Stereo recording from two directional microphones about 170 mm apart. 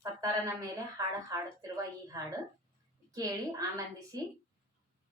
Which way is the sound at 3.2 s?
20° right (ahead or behind).